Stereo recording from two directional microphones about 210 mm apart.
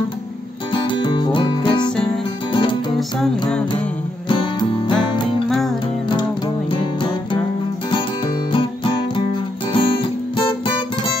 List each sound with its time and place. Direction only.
0.7 s music: 20° left (ahead or behind)
3.2 s music: 5° left (ahead or behind)
4.3 s music: 25° left (ahead or behind)
8.5 s music: 25° left (ahead or behind)